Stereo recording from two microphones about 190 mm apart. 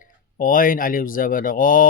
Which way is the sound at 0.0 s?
45° left (ahead or behind).